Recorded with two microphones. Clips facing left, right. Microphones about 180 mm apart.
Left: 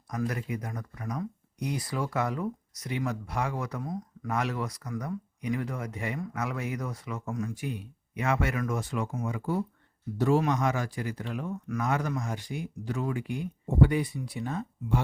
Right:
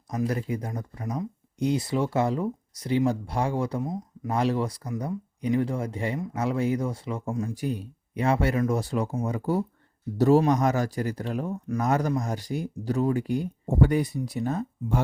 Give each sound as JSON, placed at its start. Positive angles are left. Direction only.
{"t": 0.1, "sound": "speech", "side_deg": -25}